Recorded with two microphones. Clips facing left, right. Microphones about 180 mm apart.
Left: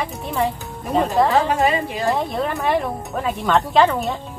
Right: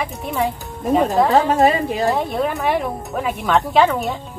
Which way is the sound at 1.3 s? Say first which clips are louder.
Right 3 dB; 40° right (ahead or behind).